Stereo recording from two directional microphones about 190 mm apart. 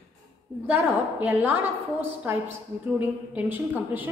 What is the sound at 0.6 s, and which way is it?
A woman's voice, 10° right (ahead or behind).